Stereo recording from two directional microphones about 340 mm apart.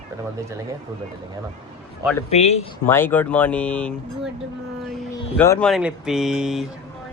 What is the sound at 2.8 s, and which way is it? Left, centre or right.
Speech, centre.